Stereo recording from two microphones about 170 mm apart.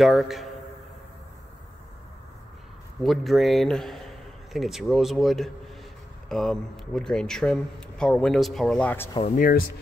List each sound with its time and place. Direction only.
0.0 s a man's voice: centre (ahead or behind)
3.0 s a man's voice: centre (ahead or behind)
9.2 s speech: 50° left (ahead or behind)